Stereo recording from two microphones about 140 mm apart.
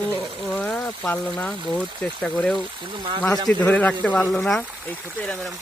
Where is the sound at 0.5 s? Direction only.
10° left (ahead or behind).